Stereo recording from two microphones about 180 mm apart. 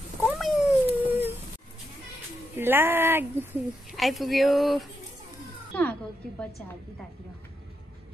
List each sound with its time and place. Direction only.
0.2 s cat: 5° right (ahead or behind)
2.6 s speech: 10° right (ahead or behind)
3.9 s a woman's voice: centre (ahead or behind)